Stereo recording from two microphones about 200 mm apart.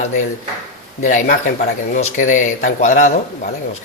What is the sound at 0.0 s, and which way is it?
Speech, 35° left (ahead or behind).